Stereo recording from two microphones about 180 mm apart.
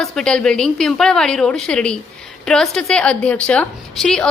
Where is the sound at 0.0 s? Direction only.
5° left (ahead or behind).